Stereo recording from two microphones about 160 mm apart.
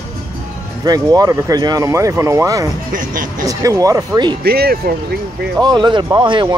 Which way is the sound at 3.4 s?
20° right (ahead or behind).